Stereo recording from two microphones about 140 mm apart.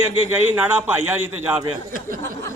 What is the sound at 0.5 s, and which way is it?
A man's voice, 15° right (ahead or behind).